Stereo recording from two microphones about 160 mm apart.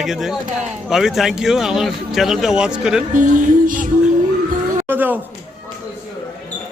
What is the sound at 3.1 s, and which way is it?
Music, 55° right (ahead or behind).